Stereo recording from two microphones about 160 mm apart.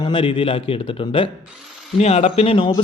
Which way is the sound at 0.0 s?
30° left (ahead or behind).